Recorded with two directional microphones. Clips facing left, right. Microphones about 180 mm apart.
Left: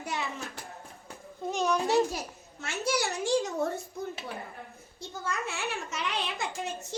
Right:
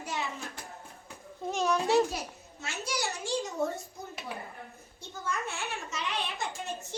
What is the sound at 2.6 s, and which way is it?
Speech, 60° left (ahead or behind).